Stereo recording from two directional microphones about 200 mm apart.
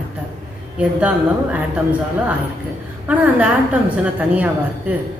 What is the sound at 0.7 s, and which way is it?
Speech, 10° right (ahead or behind).